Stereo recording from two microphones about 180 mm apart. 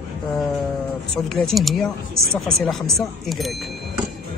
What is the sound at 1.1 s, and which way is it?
Speech, 5° left (ahead or behind).